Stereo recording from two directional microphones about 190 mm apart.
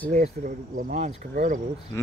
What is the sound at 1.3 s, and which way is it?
Cricket, 45° right (ahead or behind).